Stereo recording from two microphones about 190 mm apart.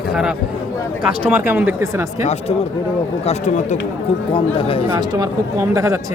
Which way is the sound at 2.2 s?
35° left (ahead or behind).